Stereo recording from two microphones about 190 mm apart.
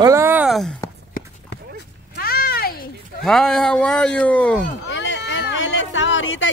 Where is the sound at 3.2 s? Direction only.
Centre (ahead or behind).